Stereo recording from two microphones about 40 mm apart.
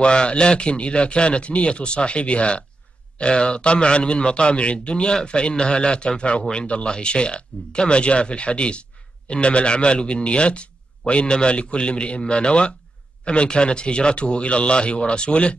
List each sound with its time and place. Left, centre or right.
0.0 s a man's voice: left